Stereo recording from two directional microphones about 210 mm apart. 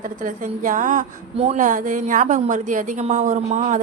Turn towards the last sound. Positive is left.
turn(degrees=-35)  # may be behind; listen again after turning